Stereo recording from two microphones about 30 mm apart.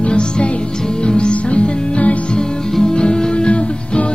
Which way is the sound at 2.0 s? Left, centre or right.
Left.